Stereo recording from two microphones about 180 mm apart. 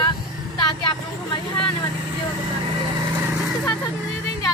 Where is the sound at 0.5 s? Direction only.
25° left (ahead or behind).